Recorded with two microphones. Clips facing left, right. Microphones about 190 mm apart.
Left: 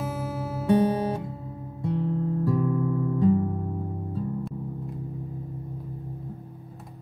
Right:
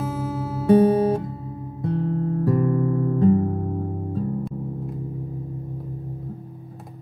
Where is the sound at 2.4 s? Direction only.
60° right (ahead or behind).